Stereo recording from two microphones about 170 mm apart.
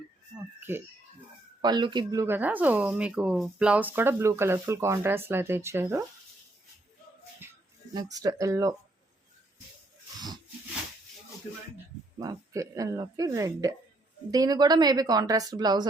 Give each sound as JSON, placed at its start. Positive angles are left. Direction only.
{"t": 1.6, "sound": "speech", "side_deg": -25}
{"t": 7.4, "sound": "music", "side_deg": -15}
{"t": 7.9, "sound": "a woman's voice", "side_deg": -20}
{"t": 12.2, "sound": "a woman's voice", "side_deg": -20}